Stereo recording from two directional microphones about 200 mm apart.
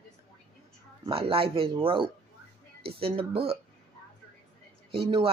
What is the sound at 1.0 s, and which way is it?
Speech, 30° right (ahead or behind).